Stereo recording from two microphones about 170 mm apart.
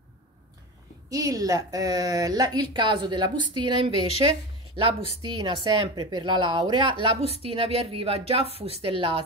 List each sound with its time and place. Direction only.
1.1 s a woman's voice: 20° right (ahead or behind)